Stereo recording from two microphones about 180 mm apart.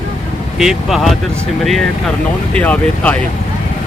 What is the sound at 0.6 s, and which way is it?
Speech, centre (ahead or behind).